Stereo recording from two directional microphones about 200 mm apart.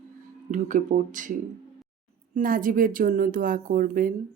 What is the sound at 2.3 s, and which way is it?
Speech, 45° right (ahead or behind).